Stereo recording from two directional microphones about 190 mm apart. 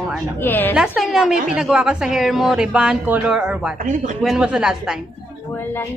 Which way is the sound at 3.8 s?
40° right (ahead or behind).